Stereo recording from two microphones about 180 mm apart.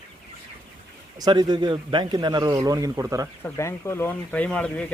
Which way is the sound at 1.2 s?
25° right (ahead or behind).